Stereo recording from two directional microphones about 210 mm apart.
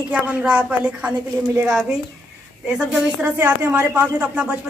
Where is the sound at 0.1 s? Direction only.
5° right (ahead or behind).